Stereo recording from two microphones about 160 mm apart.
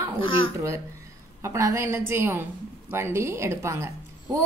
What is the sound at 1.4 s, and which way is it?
A woman's voice, 20° right (ahead or behind).